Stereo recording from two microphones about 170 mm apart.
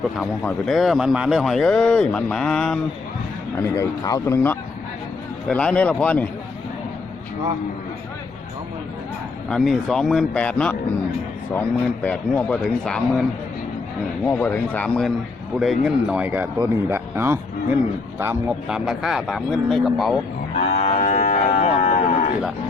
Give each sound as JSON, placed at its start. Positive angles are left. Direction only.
{"t": 0.2, "sound": "a man's voice", "side_deg": 5}
{"t": 3.6, "sound": "speech", "side_deg": 20}
{"t": 5.5, "sound": "speech", "side_deg": 5}
{"t": 9.5, "sound": "a man's voice", "side_deg": 0}
{"t": 12.0, "sound": "a man's voice", "side_deg": 10}
{"t": 14.3, "sound": "a man's voice", "side_deg": 10}
{"t": 20.6, "sound": "cattle", "side_deg": 40}